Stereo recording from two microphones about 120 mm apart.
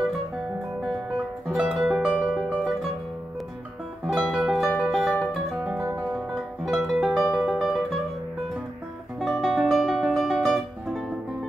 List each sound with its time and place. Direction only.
1.5 s music: centre (ahead or behind)
4.1 s music: 5° right (ahead or behind)
5.7 s music: 20° right (ahead or behind)
5.9 s music: 5° right (ahead or behind)
9.2 s music: centre (ahead or behind)